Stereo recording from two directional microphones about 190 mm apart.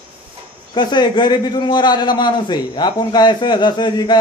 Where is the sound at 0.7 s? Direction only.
25° left (ahead or behind).